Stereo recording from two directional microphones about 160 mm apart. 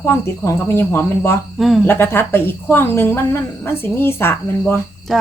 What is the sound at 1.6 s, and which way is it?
Speech, centre (ahead or behind).